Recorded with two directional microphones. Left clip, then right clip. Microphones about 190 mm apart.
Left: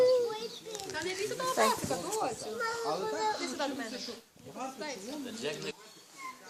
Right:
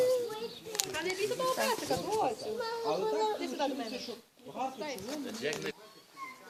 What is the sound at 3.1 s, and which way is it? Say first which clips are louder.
Speech: right 1 dB; 30° right (ahead or behind).